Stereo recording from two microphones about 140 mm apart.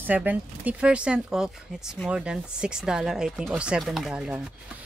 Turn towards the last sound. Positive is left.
turn(degrees=-5)  # may be behind; listen again after turning